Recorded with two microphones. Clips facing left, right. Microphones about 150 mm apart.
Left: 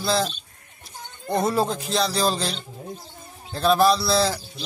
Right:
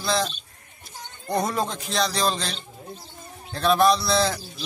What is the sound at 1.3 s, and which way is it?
A man's voice, 5° left (ahead or behind).